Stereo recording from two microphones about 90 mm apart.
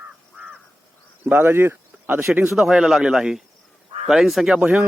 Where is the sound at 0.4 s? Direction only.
15° right (ahead or behind).